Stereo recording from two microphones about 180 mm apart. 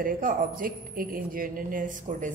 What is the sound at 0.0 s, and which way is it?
A man's voice, 50° right (ahead or behind).